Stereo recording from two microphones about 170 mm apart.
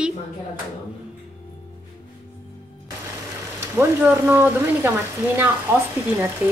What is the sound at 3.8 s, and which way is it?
Speech, 15° right (ahead or behind).